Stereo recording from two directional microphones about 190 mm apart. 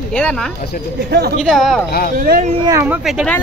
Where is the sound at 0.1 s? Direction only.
5° left (ahead or behind).